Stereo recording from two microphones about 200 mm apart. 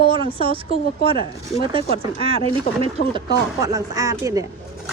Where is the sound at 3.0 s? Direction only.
35° left (ahead or behind).